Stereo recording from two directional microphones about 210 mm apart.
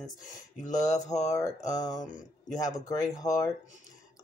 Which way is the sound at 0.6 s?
35° left (ahead or behind).